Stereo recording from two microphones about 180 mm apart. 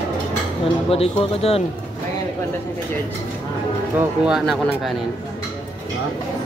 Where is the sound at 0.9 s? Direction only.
30° left (ahead or behind).